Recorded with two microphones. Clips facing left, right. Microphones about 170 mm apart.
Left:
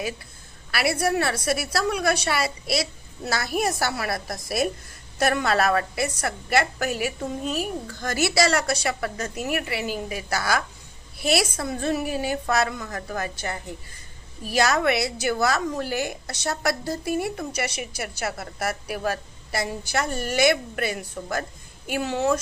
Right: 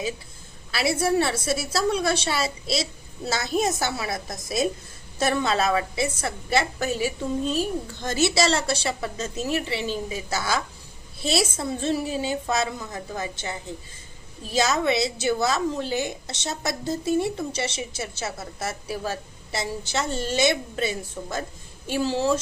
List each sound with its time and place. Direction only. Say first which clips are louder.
0.7 s a woman's voice: right 1 dB; 25° right (ahead or behind)